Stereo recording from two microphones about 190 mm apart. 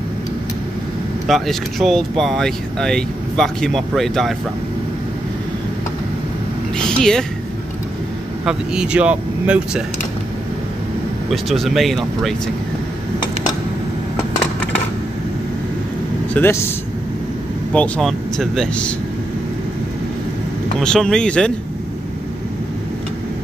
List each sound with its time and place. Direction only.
1.2 s speech: centre (ahead or behind)
6.8 s a sound: 5° left (ahead or behind)
8.5 s speech: 5° right (ahead or behind)
11.2 s speech: centre (ahead or behind)
16.3 s speech: 10° left (ahead or behind)
17.7 s speech: 5° left (ahead or behind)
20.8 s speech: 5° left (ahead or behind)